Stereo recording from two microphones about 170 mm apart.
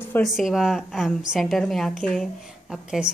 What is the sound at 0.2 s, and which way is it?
A woman's voice, centre (ahead or behind).